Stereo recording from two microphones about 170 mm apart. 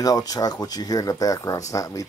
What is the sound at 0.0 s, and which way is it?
Speech, 20° left (ahead or behind).